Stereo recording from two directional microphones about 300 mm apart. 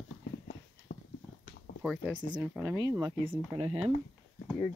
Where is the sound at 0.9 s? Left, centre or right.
Left.